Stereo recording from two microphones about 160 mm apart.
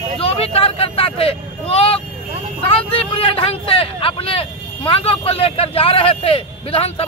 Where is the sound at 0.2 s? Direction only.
40° left (ahead or behind).